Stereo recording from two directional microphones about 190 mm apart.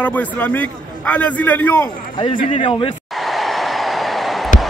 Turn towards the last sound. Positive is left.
turn(degrees=0)  # may be behind; listen again after turning